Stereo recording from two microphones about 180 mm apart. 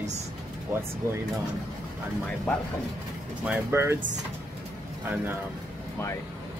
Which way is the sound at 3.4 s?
15° right (ahead or behind).